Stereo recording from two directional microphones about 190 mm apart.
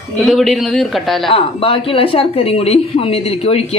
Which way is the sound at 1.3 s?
30° left (ahead or behind).